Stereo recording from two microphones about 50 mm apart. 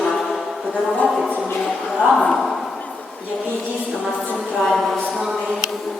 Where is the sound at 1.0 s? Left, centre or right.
Centre.